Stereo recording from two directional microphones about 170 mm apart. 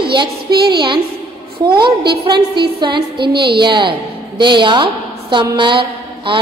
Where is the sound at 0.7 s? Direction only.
30° right (ahead or behind).